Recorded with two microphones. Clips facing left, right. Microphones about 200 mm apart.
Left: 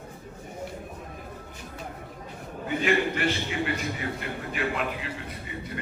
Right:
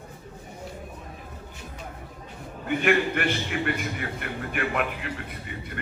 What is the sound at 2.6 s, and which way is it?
Speech, 60° right (ahead or behind).